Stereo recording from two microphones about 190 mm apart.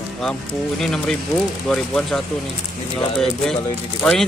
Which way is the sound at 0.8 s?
Centre (ahead or behind).